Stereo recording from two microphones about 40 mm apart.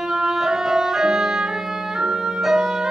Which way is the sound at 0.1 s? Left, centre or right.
Centre.